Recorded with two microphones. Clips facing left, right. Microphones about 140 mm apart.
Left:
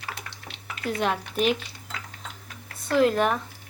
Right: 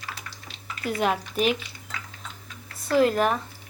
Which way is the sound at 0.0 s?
65° left (ahead or behind).